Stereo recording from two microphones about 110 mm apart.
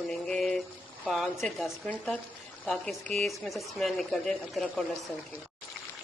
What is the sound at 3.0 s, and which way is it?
Speech, 5° left (ahead or behind).